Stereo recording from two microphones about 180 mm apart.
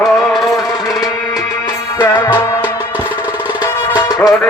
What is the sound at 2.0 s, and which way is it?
Music, 15° left (ahead or behind).